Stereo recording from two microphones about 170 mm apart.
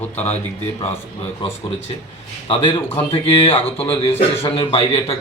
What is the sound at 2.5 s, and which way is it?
A man's voice, 35° left (ahead or behind).